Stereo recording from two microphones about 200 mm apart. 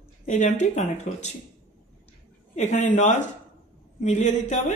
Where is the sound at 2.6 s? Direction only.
35° left (ahead or behind).